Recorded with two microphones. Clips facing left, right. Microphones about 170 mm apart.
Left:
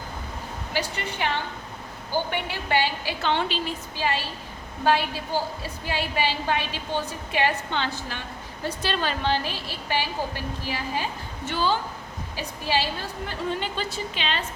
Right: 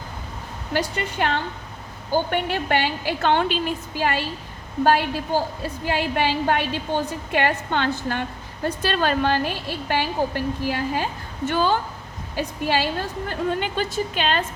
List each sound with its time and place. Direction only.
0.7 s a woman's voice: 50° right (ahead or behind)